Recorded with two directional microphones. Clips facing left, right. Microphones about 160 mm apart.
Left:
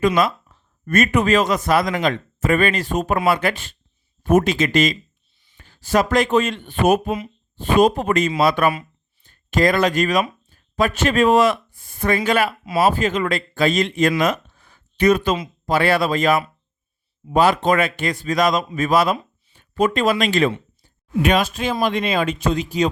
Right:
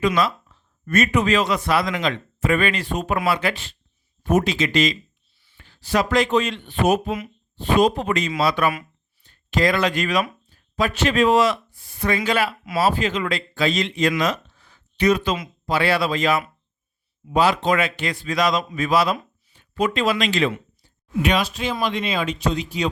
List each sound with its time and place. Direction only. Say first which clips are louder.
0.2 s speech: left 2 dB; 50° left (ahead or behind)
14.2 s a sound: left 3 dB; 50° left (ahead or behind)
15.6 s speech: left 3 dB; 50° left (ahead or behind)